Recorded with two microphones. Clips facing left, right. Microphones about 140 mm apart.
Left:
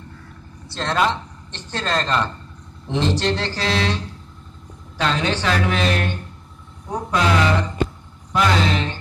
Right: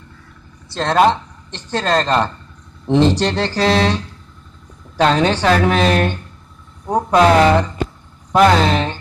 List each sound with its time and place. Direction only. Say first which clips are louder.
0.7 s a woman's voice: right 7 dB; 50° right (ahead or behind)
3.3 s a woman's voice: right 5 dB; 55° right (ahead or behind)